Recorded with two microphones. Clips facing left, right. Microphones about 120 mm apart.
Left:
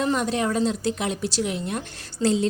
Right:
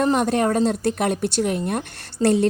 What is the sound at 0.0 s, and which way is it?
A woman's voice, 50° right (ahead or behind).